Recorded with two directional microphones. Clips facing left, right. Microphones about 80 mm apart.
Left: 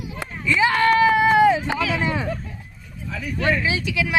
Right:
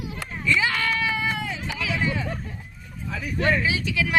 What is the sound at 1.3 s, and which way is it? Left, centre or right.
Run, left.